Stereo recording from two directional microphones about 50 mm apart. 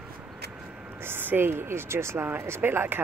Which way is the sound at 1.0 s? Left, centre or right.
Right.